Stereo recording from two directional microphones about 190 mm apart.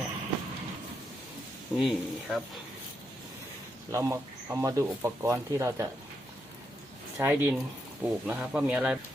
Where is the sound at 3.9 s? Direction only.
15° right (ahead or behind).